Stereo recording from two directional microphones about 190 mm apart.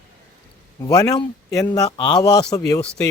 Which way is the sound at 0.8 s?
20° left (ahead or behind).